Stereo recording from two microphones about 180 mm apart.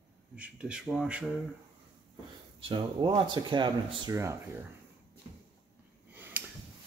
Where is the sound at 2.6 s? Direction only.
25° right (ahead or behind).